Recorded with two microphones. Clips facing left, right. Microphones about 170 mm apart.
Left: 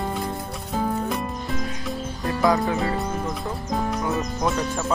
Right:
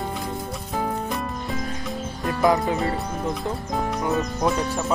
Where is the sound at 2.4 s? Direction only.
20° right (ahead or behind).